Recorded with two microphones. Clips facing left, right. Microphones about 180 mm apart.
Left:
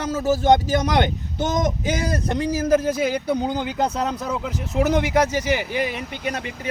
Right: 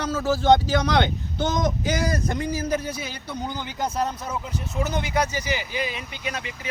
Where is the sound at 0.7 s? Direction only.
45° left (ahead or behind).